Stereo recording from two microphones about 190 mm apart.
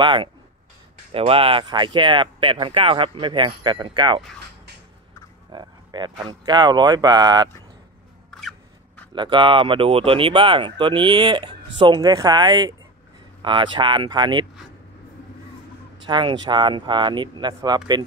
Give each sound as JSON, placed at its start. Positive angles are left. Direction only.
{"t": 0.0, "sound": "speech", "side_deg": -25}
{"t": 5.5, "sound": "speech", "side_deg": -25}
{"t": 8.3, "sound": "a sound", "side_deg": 0}
{"t": 9.1, "sound": "speech", "side_deg": -25}
{"t": 16.1, "sound": "speech", "side_deg": -25}